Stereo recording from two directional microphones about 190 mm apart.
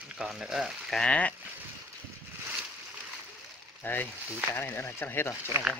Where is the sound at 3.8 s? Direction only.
10° left (ahead or behind).